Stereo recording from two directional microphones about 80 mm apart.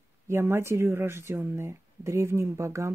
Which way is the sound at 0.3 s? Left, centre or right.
Right.